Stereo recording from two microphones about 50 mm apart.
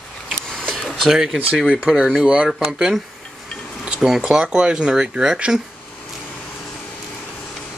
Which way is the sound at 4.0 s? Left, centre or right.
Centre.